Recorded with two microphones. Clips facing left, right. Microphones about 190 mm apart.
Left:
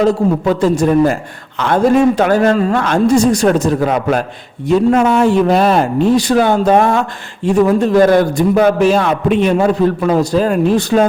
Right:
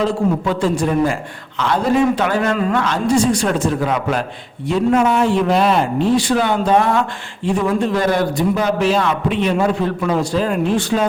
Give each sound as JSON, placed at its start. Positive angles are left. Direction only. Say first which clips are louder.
{"t": 0.0, "sound": "a man's voice", "louder": "left 5 dB", "side_deg": 45}